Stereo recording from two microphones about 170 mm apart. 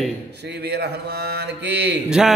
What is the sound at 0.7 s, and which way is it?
Speech, 75° right (ahead or behind).